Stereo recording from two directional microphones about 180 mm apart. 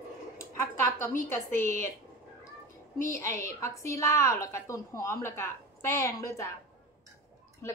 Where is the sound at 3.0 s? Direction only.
15° left (ahead or behind).